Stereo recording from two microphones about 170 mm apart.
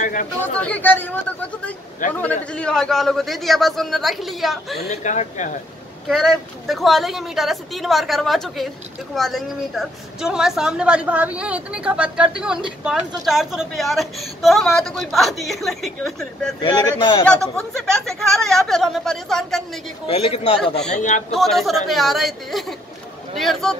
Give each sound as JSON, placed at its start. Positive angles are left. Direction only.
{"t": 0.0, "sound": "speech", "side_deg": 50}
{"t": 0.6, "sound": "a woman's voice", "side_deg": 10}
{"t": 4.8, "sound": "speech", "side_deg": 45}
{"t": 6.0, "sound": "a woman's voice", "side_deg": 0}
{"t": 16.6, "sound": "speech", "side_deg": 25}
{"t": 17.9, "sound": "a woman's voice", "side_deg": 5}
{"t": 20.1, "sound": "a man's voice", "side_deg": 35}
{"t": 20.5, "sound": "a man's voice", "side_deg": 80}
{"t": 20.9, "sound": "speech", "side_deg": 45}
{"t": 21.3, "sound": "a woman's voice", "side_deg": 0}